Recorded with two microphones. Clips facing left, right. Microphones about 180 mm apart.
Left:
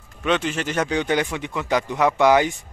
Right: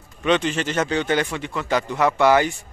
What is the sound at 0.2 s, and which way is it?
Speech, 5° left (ahead or behind).